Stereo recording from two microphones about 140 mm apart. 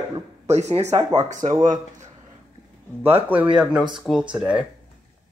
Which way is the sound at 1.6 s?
60° right (ahead or behind).